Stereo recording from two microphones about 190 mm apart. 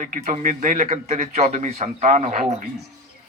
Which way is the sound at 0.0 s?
45° right (ahead or behind).